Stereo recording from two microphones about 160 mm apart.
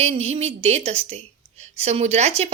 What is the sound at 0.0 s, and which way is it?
A woman's voice, 40° right (ahead or behind).